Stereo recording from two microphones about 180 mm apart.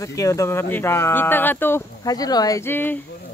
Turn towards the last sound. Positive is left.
turn(degrees=10)  # may be behind; listen again after turning